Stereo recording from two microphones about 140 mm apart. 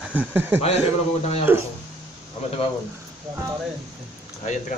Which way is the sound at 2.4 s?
50° left (ahead or behind).